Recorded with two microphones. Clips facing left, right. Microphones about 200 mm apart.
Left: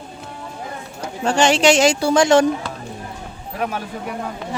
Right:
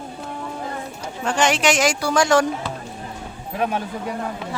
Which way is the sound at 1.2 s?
30° left (ahead or behind).